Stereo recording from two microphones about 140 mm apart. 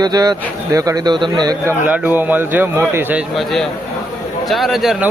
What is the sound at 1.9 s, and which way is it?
A man's voice, 10° right (ahead or behind).